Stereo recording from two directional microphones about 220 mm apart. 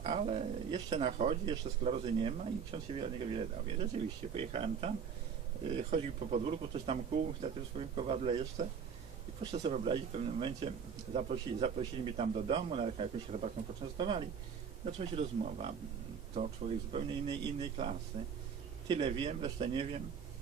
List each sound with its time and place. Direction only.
0.0 s speech: 30° right (ahead or behind)